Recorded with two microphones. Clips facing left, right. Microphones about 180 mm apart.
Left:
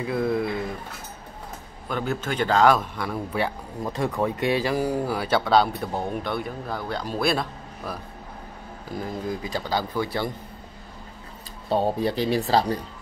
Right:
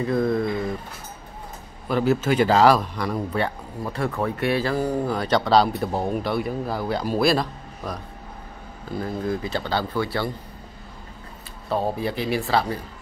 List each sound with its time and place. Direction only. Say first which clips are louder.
0.0 s speech: right 2 dB; 5° left (ahead or behind)
1.9 s speech: right 7 dB; 5° right (ahead or behind)
3.8 s speech: even; 15° left (ahead or behind)
9.0 s speech: right 4 dB; 15° left (ahead or behind)
12.0 s speech: left 2 dB; 35° left (ahead or behind)